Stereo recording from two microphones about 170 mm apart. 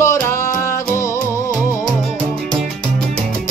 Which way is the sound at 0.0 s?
15° left (ahead or behind).